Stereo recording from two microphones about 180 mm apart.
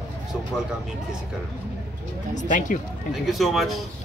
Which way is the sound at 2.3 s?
45° left (ahead or behind).